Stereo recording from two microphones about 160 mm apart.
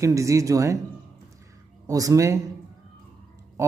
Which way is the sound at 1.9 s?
20° right (ahead or behind).